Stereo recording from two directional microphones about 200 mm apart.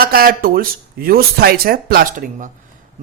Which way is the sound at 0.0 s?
50° right (ahead or behind).